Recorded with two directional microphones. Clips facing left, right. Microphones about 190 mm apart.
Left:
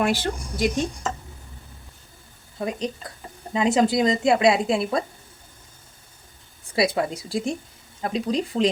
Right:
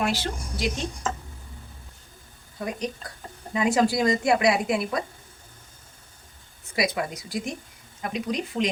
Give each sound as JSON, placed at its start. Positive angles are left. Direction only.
{"t": 0.0, "sound": "speech", "side_deg": 50}
{"t": 2.6, "sound": "a woman's voice", "side_deg": 25}
{"t": 6.7, "sound": "a woman's voice", "side_deg": 30}